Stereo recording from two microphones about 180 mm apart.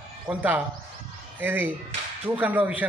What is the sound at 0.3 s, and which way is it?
A man's voice, 10° right (ahead or behind).